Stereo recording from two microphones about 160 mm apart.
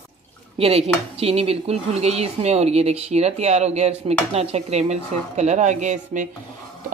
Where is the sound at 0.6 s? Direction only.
40° right (ahead or behind).